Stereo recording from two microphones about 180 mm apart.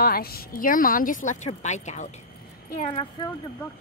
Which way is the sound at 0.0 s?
55° left (ahead or behind).